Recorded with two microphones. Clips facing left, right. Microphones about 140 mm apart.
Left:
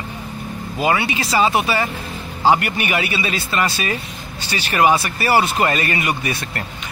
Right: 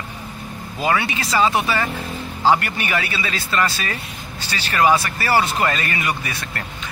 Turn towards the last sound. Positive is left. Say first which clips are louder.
# left 3 dB
turn(degrees=25)  # may be behind; listen again after turning